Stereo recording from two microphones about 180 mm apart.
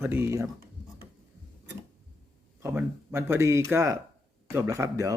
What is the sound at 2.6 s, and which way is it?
Speech, 10° right (ahead or behind).